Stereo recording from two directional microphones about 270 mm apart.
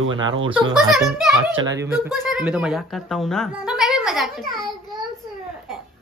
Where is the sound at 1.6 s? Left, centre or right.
Centre.